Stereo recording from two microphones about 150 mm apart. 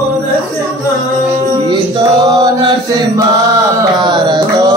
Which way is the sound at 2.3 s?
25° right (ahead or behind).